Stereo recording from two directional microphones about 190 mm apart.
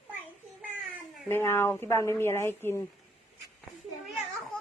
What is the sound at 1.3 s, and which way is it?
Speech, 10° left (ahead or behind).